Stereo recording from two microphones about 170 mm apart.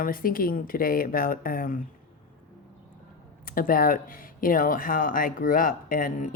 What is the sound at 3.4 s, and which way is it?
A woman's voice, 55° left (ahead or behind).